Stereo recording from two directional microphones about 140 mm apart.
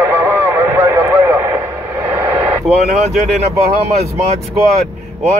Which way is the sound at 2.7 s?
Centre (ahead or behind).